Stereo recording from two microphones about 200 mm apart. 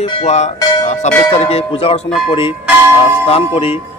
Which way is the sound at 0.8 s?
35° left (ahead or behind).